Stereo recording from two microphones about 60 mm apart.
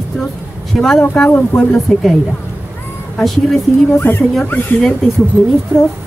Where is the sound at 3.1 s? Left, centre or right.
Centre.